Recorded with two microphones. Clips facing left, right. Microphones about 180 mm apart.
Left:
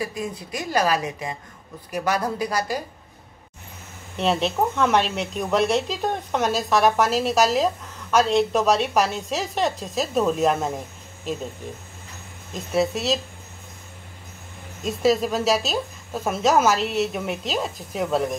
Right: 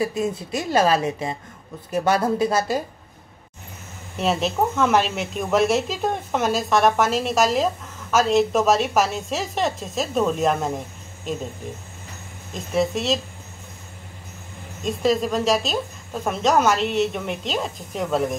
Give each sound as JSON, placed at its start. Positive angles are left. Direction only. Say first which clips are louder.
{"t": 0.0, "sound": "speech", "louder": "right 5 dB", "side_deg": -25}
{"t": 4.2, "sound": "speech", "louder": "even", "side_deg": 0}
{"t": 12.7, "sound": "speech", "louder": "even", "side_deg": 0}
{"t": 14.9, "sound": "speech", "louder": "even", "side_deg": 5}